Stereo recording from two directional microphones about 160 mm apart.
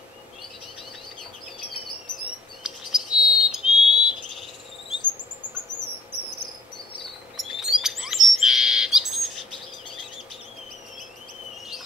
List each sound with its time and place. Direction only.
2.6 s bird: 5° right (ahead or behind)
7.6 s bird: 5° right (ahead or behind)